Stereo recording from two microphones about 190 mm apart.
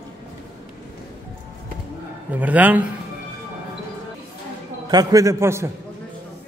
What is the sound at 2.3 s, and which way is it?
Speech, 10° right (ahead or behind).